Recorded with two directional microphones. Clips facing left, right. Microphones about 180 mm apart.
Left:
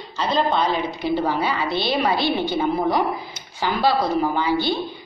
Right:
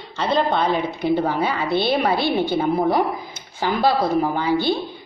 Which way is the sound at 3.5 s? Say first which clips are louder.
Right 1 dB; 50° right (ahead or behind).